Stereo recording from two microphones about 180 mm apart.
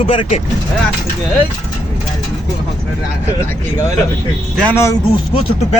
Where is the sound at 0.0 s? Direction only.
30° left (ahead or behind).